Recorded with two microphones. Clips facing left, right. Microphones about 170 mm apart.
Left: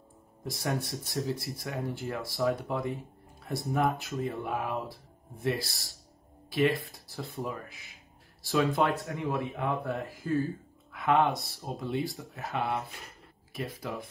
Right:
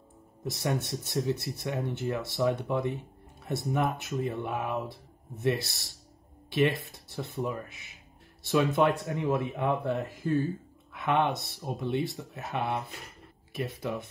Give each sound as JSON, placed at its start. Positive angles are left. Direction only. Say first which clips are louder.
{"t": 0.5, "sound": "speech", "louder": "right 2 dB", "side_deg": -20}
{"t": 6.9, "sound": "speech", "louder": "right 2 dB", "side_deg": -25}